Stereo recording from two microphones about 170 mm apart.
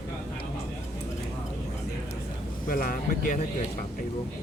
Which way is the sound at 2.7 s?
55° left (ahead or behind).